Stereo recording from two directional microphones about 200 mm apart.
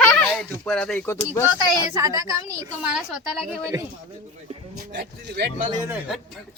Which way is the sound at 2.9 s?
5° right (ahead or behind).